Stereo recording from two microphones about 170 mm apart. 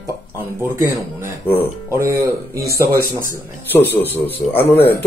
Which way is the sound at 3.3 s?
10° left (ahead or behind).